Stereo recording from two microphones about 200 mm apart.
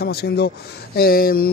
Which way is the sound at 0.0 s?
50° left (ahead or behind).